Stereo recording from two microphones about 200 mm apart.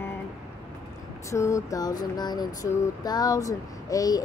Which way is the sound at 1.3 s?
15° left (ahead or behind).